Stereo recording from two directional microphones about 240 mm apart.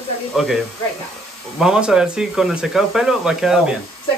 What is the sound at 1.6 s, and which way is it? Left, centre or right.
Speech, centre.